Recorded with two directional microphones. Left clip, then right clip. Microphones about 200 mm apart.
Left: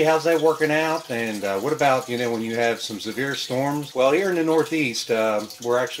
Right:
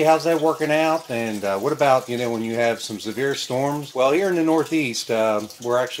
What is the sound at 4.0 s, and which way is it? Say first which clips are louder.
Speech: right 1 dB; 25° right (ahead or behind).